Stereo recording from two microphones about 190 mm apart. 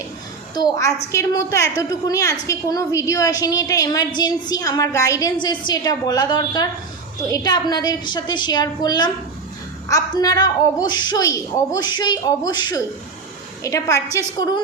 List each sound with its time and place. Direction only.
0.5 s a woman's voice: 20° left (ahead or behind)